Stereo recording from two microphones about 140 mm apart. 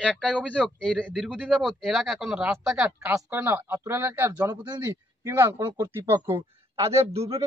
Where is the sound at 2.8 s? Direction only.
15° right (ahead or behind).